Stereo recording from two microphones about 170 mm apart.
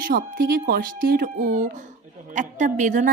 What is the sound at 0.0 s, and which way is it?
A woman's voice, 60° right (ahead or behind).